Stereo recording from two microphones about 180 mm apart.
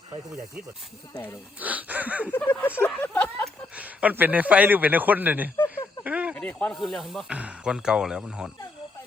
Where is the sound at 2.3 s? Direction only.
10° left (ahead or behind).